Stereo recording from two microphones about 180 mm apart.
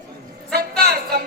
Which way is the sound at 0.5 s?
60° right (ahead or behind).